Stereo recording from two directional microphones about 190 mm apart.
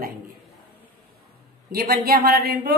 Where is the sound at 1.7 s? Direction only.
50° right (ahead or behind).